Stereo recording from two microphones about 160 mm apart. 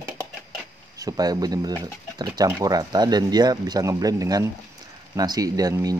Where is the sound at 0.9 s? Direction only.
20° right (ahead or behind).